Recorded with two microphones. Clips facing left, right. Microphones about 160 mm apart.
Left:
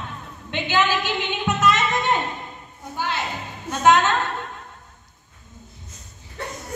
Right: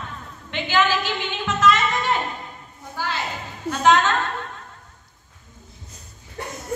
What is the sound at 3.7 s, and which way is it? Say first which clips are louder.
Speech: left 1 dB; 20° left (ahead or behind).